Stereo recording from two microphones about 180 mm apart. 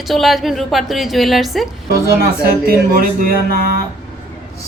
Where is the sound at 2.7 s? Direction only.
55° right (ahead or behind).